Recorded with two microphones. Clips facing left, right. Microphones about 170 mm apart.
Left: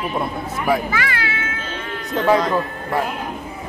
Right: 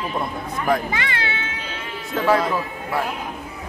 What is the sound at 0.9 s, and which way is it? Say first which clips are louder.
Speech: left 2 dB; 25° right (ahead or behind).